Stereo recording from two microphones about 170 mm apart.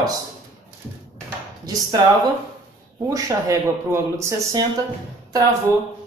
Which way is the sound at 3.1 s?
20° right (ahead or behind).